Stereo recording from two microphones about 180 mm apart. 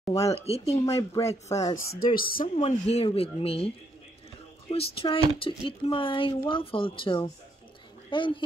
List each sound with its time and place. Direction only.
0.3 s speech: 35° left (ahead or behind)
0.8 s speech: 15° left (ahead or behind)
2.1 s speech: 55° left (ahead or behind)
2.4 s speech: 35° left (ahead or behind)